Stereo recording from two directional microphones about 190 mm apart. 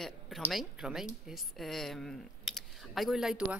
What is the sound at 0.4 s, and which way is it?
A woman's voice, centre (ahead or behind).